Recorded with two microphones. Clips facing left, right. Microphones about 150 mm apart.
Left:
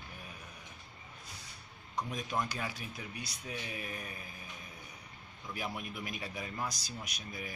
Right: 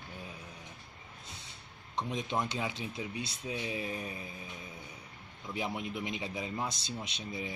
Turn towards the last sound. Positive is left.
turn(degrees=-25)  # may be behind; listen again after turning